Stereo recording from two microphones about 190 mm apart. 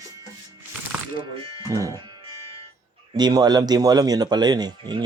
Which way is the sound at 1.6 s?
15° right (ahead or behind).